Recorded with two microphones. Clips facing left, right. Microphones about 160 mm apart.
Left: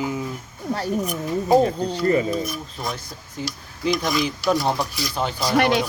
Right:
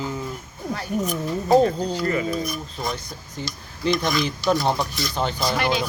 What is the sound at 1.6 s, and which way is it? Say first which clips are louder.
Speech: left 2 dB; 25° left (ahead or behind).